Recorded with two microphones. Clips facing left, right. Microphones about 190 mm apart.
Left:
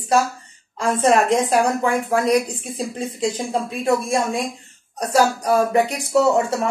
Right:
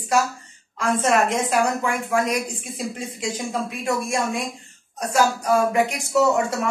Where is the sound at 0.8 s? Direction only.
30° left (ahead or behind).